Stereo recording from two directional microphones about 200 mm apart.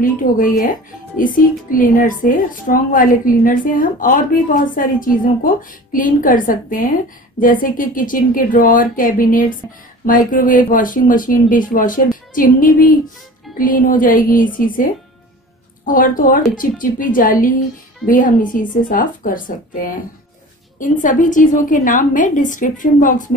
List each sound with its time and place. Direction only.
0.0 s speech: 45° left (ahead or behind)
20.8 s a woman's voice: 40° left (ahead or behind)